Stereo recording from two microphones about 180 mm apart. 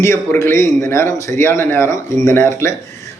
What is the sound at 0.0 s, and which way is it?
A man's voice, 15° left (ahead or behind).